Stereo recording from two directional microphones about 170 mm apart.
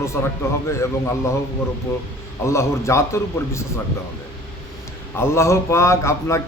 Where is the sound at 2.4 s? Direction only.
15° left (ahead or behind).